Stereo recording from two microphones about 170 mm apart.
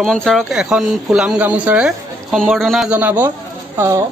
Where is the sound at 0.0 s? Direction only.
5° left (ahead or behind).